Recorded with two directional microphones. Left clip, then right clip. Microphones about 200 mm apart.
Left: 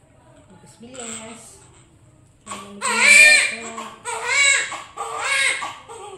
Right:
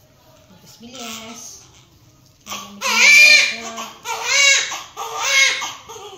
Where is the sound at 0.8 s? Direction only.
15° left (ahead or behind).